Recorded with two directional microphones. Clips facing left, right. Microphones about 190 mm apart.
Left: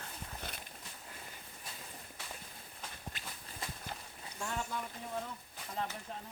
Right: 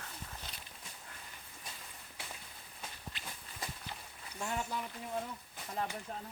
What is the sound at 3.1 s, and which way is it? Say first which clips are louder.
Walk: even; 45° left (ahead or behind).